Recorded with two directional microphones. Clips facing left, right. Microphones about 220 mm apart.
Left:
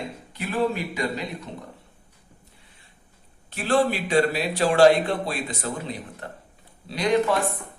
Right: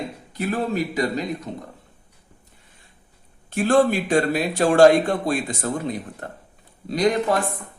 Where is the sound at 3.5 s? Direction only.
45° right (ahead or behind).